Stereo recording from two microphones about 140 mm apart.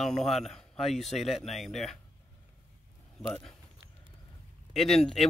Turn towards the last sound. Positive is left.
turn(degrees=5)  # may be behind; listen again after turning